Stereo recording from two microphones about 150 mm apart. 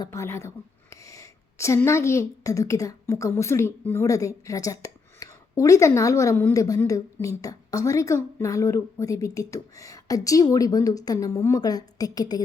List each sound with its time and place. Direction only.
0.0 s a woman's voice: 20° left (ahead or behind)